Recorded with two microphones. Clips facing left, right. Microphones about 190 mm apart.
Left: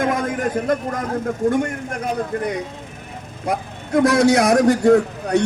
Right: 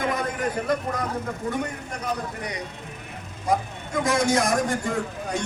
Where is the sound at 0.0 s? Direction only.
45° left (ahead or behind).